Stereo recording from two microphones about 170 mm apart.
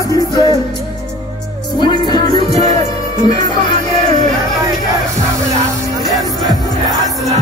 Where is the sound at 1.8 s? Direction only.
25° left (ahead or behind).